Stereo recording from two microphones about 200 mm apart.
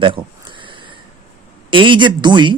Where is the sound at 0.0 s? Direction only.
25° right (ahead or behind).